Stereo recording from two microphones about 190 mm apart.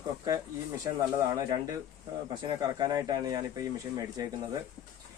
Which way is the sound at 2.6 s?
20° right (ahead or behind).